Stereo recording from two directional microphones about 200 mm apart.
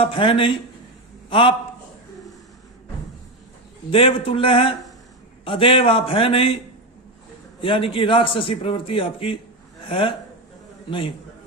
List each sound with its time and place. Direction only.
0.0 s a man's voice: 25° left (ahead or behind)
3.9 s a man's voice: 30° left (ahead or behind)
7.6 s a man's voice: 25° left (ahead or behind)